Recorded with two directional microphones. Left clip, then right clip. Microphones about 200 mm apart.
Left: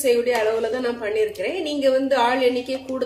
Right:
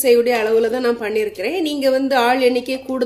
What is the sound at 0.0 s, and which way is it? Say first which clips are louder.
A woman's voice: right 4 dB; 50° right (ahead or behind).